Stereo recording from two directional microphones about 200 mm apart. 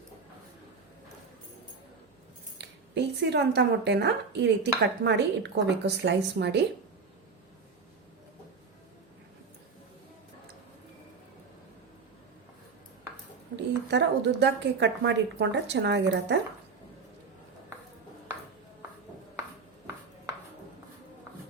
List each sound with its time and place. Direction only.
2.6 s a woman's voice: 60° right (ahead or behind)
13.6 s a woman's voice: 60° right (ahead or behind)